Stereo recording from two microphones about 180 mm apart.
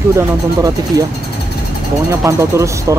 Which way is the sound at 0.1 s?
20° right (ahead or behind).